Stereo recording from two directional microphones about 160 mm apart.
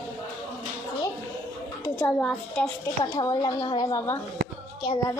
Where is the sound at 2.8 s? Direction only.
25° left (ahead or behind).